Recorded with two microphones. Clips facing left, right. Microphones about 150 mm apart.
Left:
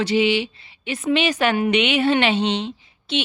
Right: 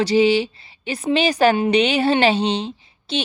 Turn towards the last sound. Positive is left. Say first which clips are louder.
# even
turn(degrees=-35)  # may be behind; listen again after turning